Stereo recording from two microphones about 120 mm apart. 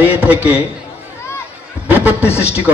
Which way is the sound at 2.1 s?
20° left (ahead or behind).